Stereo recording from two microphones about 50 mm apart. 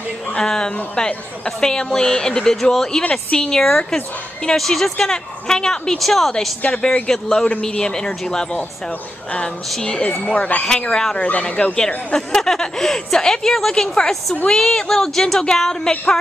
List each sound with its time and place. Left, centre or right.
0.4 s speech: centre
3.0 s a woman's voice: left; by 6.3 s centre
6.6 s speech: centre
9.7 s speech: centre
10.2 s speech: left
10.6 s speech: centre
12.1 s speech: centre